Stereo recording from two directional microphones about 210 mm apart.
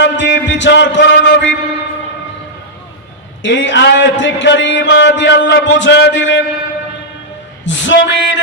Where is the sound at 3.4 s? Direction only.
60° left (ahead or behind).